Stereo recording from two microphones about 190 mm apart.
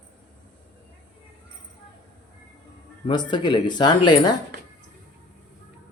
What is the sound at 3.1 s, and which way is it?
Speech, 25° left (ahead or behind).